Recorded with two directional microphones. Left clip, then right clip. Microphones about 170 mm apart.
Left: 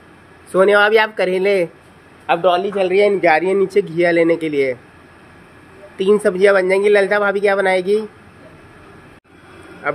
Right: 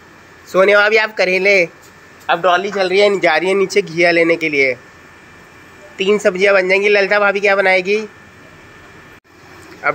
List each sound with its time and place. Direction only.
0.5 s speech: 25° left (ahead or behind)
2.8 s speech: 15° left (ahead or behind)
5.9 s speech: 25° left (ahead or behind)